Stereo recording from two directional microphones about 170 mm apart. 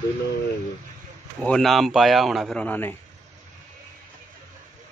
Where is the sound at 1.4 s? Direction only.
5° left (ahead or behind).